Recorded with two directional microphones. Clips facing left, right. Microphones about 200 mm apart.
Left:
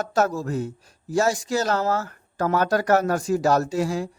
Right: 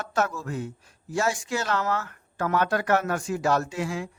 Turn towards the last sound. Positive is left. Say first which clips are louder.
# left 6 dB
turn(degrees=40)  # may be behind; listen again after turning